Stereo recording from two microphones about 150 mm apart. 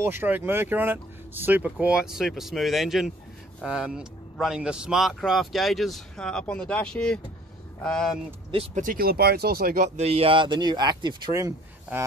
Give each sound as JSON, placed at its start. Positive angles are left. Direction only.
{"t": 0.0, "sound": "speech", "side_deg": -15}
{"t": 8.7, "sound": "speech", "side_deg": -70}
{"t": 9.9, "sound": "speech", "side_deg": -40}